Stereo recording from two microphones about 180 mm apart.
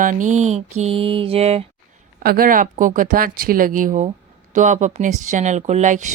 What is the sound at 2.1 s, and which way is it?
Speech, 55° right (ahead or behind).